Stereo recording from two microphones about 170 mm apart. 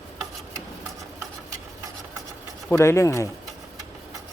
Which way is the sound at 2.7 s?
15° left (ahead or behind).